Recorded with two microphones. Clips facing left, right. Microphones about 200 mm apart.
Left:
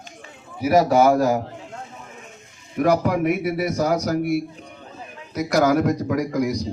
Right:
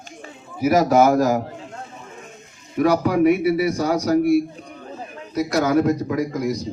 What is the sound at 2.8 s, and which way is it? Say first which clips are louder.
Speech: right 1 dB; 55° left (ahead or behind).